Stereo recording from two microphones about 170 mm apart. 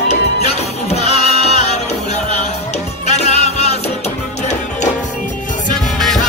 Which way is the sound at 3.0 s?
40° left (ahead or behind).